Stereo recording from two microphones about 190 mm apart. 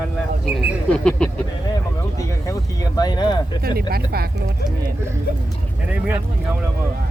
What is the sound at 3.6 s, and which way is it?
Speech, 55° right (ahead or behind).